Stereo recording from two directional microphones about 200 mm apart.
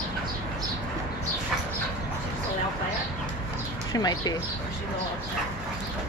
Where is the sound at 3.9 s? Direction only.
20° left (ahead or behind).